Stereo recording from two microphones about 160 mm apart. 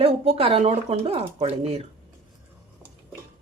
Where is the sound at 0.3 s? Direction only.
35° right (ahead or behind).